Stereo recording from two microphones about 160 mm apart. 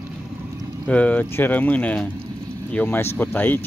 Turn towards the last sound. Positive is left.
turn(degrees=10)  # may be behind; listen again after turning